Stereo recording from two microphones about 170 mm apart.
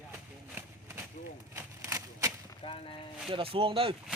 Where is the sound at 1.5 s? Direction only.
15° right (ahead or behind).